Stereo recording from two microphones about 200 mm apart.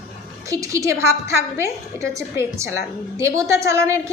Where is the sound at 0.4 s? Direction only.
15° right (ahead or behind).